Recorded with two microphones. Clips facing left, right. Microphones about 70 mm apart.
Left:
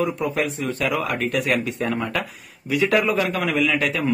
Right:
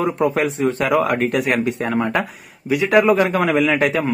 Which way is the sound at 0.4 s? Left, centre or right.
Right.